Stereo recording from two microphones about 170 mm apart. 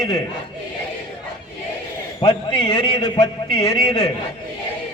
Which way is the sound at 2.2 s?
25° left (ahead or behind).